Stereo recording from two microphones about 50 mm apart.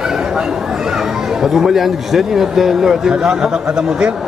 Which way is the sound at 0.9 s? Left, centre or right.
Centre.